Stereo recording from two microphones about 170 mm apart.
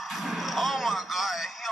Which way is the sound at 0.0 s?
Centre (ahead or behind).